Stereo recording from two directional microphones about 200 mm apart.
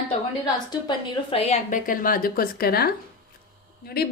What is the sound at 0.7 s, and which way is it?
A woman's voice, 25° left (ahead or behind).